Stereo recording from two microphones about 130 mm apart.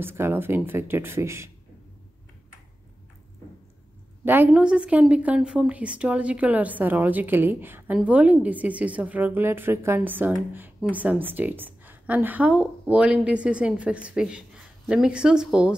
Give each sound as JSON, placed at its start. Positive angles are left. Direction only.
{"t": 0.0, "sound": "speech", "side_deg": -15}
{"t": 4.2, "sound": "a woman's voice", "side_deg": -15}